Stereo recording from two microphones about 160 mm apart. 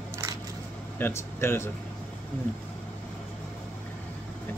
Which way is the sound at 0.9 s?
15° left (ahead or behind).